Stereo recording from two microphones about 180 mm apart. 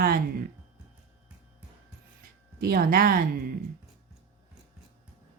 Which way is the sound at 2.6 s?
55° right (ahead or behind).